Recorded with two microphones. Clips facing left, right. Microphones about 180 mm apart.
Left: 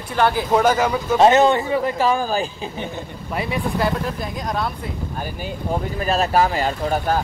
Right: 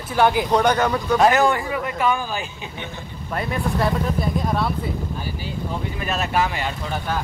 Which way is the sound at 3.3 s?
5° left (ahead or behind).